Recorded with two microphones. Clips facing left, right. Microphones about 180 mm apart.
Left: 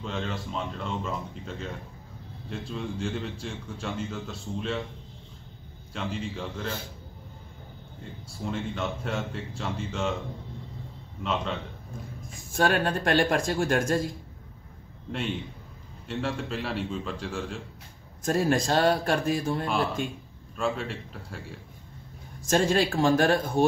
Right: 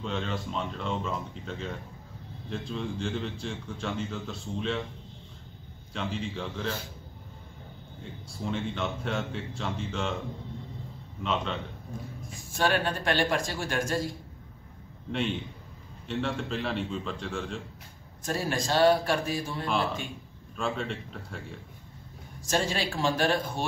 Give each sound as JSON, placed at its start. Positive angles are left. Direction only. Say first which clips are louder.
{"t": 0.0, "sound": "a man's voice", "louder": "even", "side_deg": 0}
{"t": 5.9, "sound": "a man's voice", "louder": "even", "side_deg": 0}
{"t": 8.4, "sound": "a man's voice", "louder": "even", "side_deg": 0}
{"t": 11.2, "sound": "a man's voice", "louder": "left 1 dB", "side_deg": 0}
{"t": 12.5, "sound": "a man's voice", "louder": "left 3 dB", "side_deg": 50}
{"t": 15.0, "sound": "a man's voice", "louder": "right 1 dB", "side_deg": 0}
{"t": 18.2, "sound": "a man's voice", "louder": "left 6 dB", "side_deg": 50}
{"t": 20.5, "sound": "a man's voice", "louder": "left 2 dB", "side_deg": 0}
{"t": 22.4, "sound": "a man's voice", "louder": "left 6 dB", "side_deg": 50}